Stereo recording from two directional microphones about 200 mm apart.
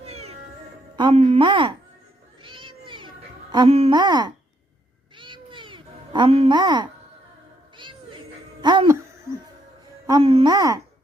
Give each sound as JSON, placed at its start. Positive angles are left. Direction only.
{"t": 0.0, "sound": "music", "side_deg": -30}
{"t": 0.9, "sound": "speech", "side_deg": -25}
{"t": 2.4, "sound": "cat", "side_deg": -25}
{"t": 3.5, "sound": "speech", "side_deg": -25}
{"t": 5.1, "sound": "meow", "side_deg": -25}
{"t": 7.8, "sound": "music", "side_deg": -25}
{"t": 8.6, "sound": "speech", "side_deg": -25}
{"t": 10.1, "sound": "speech", "side_deg": -25}